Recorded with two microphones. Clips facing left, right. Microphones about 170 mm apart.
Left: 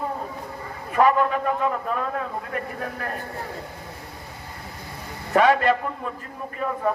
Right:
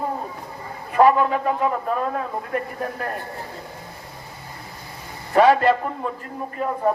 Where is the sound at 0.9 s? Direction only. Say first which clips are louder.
Right 3 dB; 30° right (ahead or behind).